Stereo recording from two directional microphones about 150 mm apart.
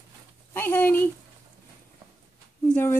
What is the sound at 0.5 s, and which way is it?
Speech, 10° left (ahead or behind).